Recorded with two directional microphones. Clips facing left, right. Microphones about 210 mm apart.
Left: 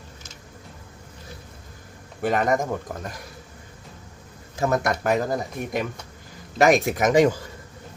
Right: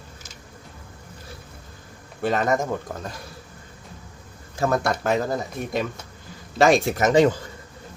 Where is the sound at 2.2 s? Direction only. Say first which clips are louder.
Even; 15° left (ahead or behind).